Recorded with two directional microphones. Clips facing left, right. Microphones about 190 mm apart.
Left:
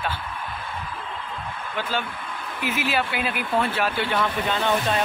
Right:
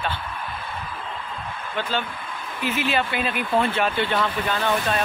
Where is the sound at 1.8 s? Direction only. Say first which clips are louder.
Right 1 dB; 10° left (ahead or behind).